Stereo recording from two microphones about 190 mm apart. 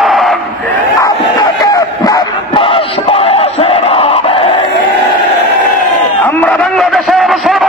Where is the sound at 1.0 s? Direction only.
20° left (ahead or behind).